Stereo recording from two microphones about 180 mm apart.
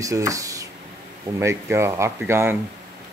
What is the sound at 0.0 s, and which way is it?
Speech, 20° right (ahead or behind).